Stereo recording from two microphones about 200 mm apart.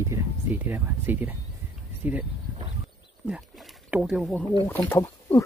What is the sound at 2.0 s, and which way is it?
Speech, 5° right (ahead or behind).